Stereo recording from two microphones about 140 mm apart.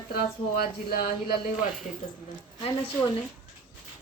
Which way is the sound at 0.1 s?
90° left.